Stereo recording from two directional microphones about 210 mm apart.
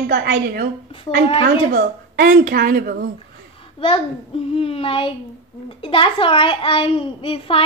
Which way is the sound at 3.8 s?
25° left (ahead or behind).